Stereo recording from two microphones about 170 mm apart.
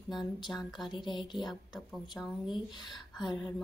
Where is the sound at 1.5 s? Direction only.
Centre (ahead or behind).